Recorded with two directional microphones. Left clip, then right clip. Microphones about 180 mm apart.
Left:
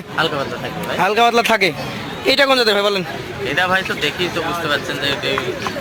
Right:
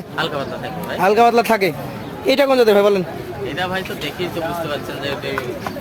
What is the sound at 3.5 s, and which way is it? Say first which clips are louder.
Speech: left 7 dB; 15° left (ahead or behind).